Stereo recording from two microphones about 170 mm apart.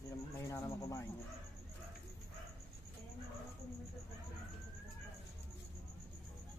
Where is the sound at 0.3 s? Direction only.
15° left (ahead or behind).